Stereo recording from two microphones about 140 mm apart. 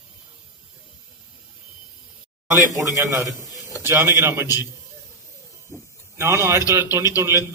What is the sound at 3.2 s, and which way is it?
Speech, 25° left (ahead or behind).